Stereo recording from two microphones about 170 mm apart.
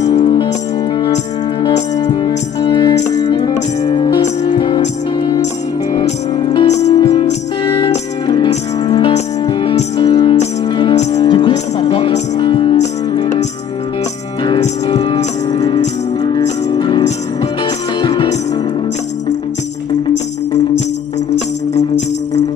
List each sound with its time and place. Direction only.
0.2 s music: 30° left (ahead or behind)
1.6 s music: 25° left (ahead or behind)
14.9 s music: 30° left (ahead or behind)